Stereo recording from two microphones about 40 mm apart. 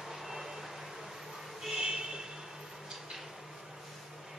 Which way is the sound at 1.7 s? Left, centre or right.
Centre.